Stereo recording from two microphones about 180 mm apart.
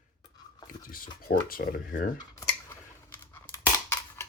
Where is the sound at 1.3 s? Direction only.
55° left (ahead or behind).